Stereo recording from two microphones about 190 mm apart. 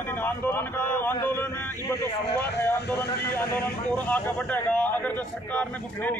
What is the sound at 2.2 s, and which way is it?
Speech, 60° left (ahead or behind).